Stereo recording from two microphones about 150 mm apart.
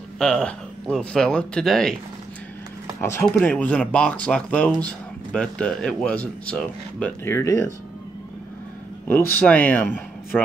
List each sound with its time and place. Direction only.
0.2 s speech: 5° left (ahead or behind)
3.0 s speech: 20° left (ahead or behind)
9.0 s speech: 10° left (ahead or behind)